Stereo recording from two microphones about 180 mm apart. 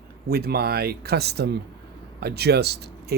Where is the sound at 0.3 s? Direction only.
60° right (ahead or behind).